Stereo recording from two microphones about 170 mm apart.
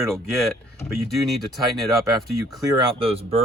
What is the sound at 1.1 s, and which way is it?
Speech, centre (ahead or behind).